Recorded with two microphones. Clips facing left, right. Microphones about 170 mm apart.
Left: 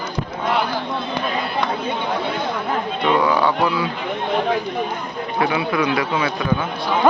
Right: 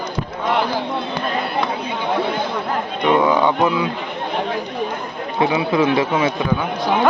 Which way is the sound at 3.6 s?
20° right (ahead or behind).